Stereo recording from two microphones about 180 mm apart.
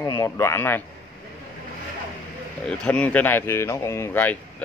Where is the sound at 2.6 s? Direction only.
5° left (ahead or behind).